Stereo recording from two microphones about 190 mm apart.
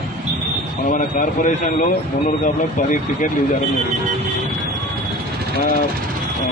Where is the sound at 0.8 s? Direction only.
45° left (ahead or behind).